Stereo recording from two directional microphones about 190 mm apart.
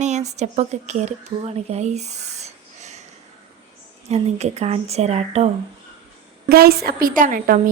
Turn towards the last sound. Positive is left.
turn(degrees=-45)  # may be behind; listen again after turning